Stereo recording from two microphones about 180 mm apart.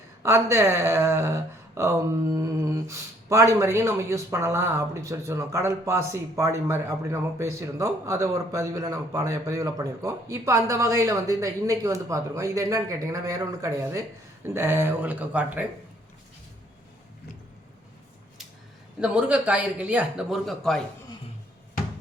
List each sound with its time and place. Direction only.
0.2 s speech: 15° right (ahead or behind)
18.9 s speech: 5° right (ahead or behind)